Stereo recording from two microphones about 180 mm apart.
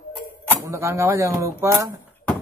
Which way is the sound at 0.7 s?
15° right (ahead or behind).